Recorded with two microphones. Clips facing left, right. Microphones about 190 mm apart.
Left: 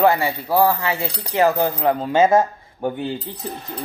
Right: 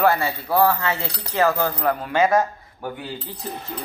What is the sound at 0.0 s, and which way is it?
Speech, 15° left (ahead or behind).